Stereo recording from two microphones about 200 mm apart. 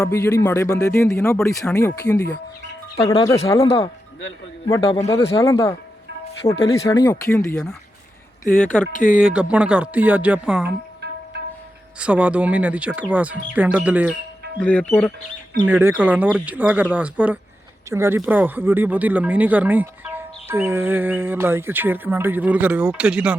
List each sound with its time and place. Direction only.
0.0 s speech: 15° left (ahead or behind)
1.4 s speech: centre (ahead or behind)
1.7 s a man's voice: 15° left (ahead or behind)
4.7 s a man's voice: 25° left (ahead or behind)
6.4 s a man's voice: 30° left (ahead or behind)
7.5 s speech: 5° left (ahead or behind)
8.9 s speech: 40° left (ahead or behind)
9.2 s speech: 5° right (ahead or behind)
11.9 s speech: 5° right (ahead or behind)
14.6 s speech: 5° left (ahead or behind)
15.6 s speech: 10° right (ahead or behind)